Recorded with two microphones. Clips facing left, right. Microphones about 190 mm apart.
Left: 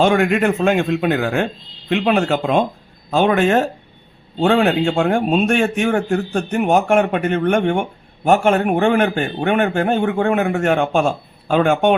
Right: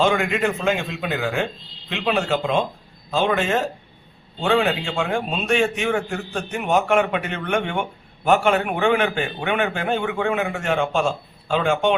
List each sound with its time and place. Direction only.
0.0 s a man's voice: 55° left (ahead or behind)